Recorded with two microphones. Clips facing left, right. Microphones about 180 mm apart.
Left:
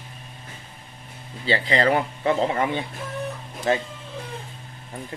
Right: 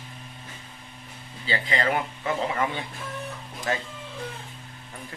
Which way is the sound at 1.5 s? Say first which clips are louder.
Left 5 dB; 35° left (ahead or behind).